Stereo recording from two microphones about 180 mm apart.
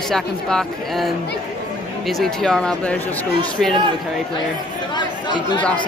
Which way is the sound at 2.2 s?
5° left (ahead or behind).